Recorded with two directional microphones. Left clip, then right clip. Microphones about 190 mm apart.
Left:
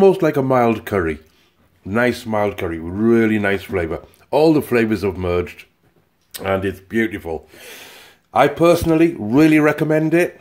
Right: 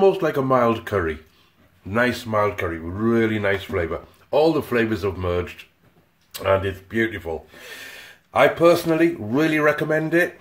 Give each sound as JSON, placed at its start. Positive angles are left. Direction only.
{"t": 0.0, "sound": "speech", "side_deg": 40}
{"t": 6.3, "sound": "speech", "side_deg": 45}